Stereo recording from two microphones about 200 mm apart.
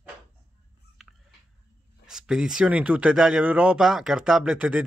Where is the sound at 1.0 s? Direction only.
Centre (ahead or behind).